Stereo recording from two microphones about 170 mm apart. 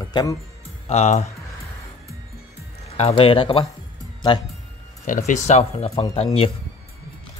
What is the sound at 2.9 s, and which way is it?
Speech, 35° left (ahead or behind).